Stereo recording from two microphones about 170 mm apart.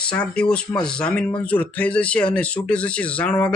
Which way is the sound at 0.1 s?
5° left (ahead or behind).